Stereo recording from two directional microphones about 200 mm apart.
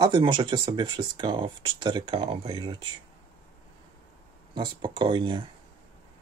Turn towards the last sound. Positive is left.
turn(degrees=-25)  # may be behind; listen again after turning